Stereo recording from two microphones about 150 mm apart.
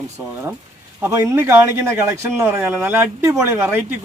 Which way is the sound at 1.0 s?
20° right (ahead or behind).